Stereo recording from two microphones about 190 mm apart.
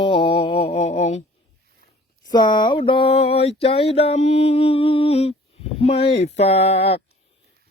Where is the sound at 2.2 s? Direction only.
20° left (ahead or behind).